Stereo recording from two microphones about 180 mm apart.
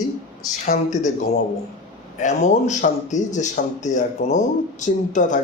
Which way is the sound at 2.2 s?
45° left (ahead or behind).